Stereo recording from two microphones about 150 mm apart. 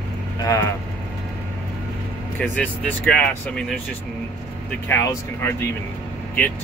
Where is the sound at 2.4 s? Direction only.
10° left (ahead or behind).